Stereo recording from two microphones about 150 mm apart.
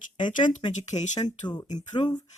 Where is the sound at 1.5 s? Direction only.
30° left (ahead or behind).